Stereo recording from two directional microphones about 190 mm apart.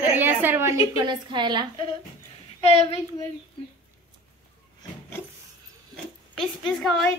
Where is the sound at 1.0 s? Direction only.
25° right (ahead or behind).